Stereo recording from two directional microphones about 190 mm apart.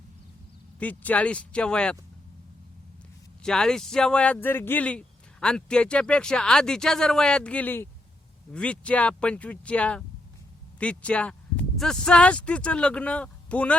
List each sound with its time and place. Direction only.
0.8 s speech: 10° left (ahead or behind)
3.4 s speech: 5° left (ahead or behind)